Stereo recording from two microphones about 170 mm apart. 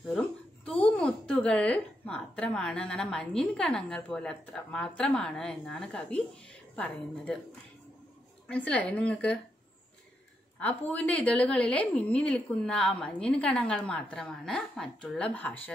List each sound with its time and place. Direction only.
0.1 s a woman's voice: 5° left (ahead or behind)
8.5 s a woman's voice: 5° left (ahead or behind)
10.6 s a woman's voice: 10° left (ahead or behind)